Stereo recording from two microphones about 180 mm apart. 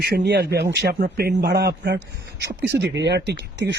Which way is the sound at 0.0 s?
70° right (ahead or behind).